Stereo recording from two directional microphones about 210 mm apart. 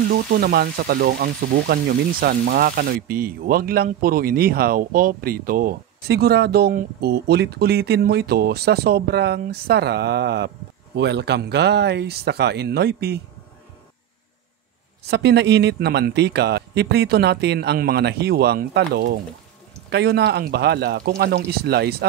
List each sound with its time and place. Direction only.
0.1 s speech: 45° right (ahead or behind)
15.0 s speech: 55° right (ahead or behind)